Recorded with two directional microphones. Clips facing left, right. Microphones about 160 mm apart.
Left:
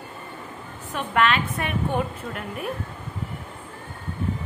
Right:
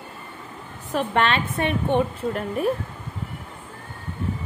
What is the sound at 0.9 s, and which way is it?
Speech, 30° right (ahead or behind).